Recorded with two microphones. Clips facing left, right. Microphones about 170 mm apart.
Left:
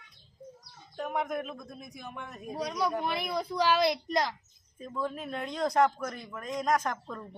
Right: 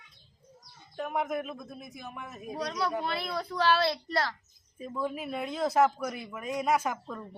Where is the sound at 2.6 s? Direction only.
10° left (ahead or behind).